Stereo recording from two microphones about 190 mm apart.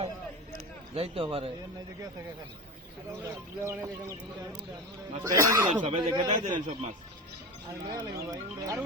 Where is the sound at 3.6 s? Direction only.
15° right (ahead or behind).